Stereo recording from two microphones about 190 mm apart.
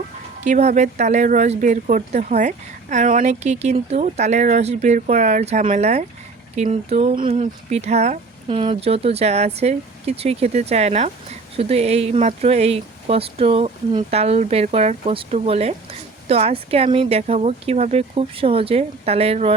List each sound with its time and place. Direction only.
0.4 s speech: 40° right (ahead or behind)